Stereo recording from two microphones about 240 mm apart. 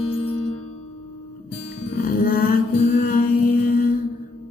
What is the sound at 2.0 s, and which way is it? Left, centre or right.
Music, left.